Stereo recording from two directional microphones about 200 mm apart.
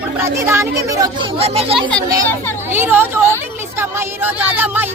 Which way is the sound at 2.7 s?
10° right (ahead or behind).